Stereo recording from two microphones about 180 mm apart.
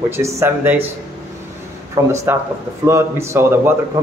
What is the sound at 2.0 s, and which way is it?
A man's voice, 15° right (ahead or behind).